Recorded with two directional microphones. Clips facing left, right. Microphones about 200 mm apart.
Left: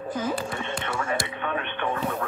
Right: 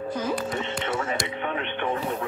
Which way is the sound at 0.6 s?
25° right (ahead or behind).